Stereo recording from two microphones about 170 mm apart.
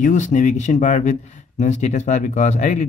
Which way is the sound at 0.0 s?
45° left (ahead or behind).